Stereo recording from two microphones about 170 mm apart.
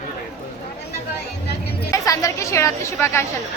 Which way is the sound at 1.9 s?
20° left (ahead or behind).